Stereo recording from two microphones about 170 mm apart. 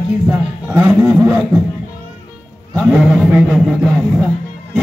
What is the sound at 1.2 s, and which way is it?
Music, 15° right (ahead or behind).